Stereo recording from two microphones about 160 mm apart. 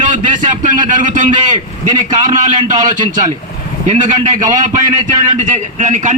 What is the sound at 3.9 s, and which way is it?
A man's voice, 50° right (ahead or behind).